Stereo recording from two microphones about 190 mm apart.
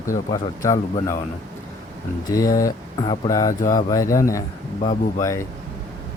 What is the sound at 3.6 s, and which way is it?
Speech, 45° left (ahead or behind).